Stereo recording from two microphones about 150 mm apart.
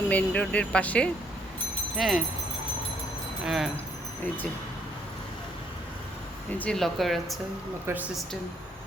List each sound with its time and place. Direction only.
0.1 s speech: 10° left (ahead or behind)
3.4 s speech: centre (ahead or behind)
6.6 s speech: 5° left (ahead or behind)
7.9 s speech: 15° right (ahead or behind)